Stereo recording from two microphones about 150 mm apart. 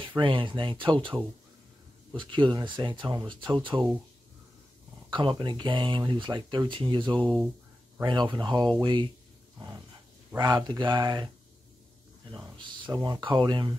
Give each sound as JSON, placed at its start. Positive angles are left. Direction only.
{"t": 0.2, "sound": "speech", "side_deg": -35}
{"t": 2.1, "sound": "speech", "side_deg": -30}
{"t": 5.1, "sound": "speech", "side_deg": -30}
{"t": 7.2, "sound": "speech", "side_deg": 0}
{"t": 8.0, "sound": "speech", "side_deg": -30}
{"t": 10.3, "sound": "speech", "side_deg": -25}
{"t": 12.5, "sound": "speech", "side_deg": -30}